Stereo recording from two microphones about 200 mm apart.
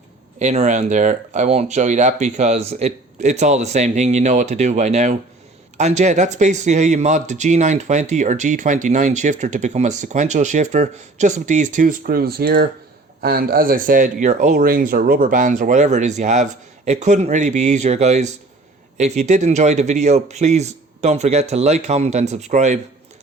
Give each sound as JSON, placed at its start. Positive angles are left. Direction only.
{"t": 0.3, "sound": "speech", "side_deg": -35}